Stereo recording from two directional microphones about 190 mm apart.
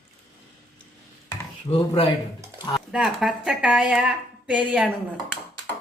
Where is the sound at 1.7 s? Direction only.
15° left (ahead or behind).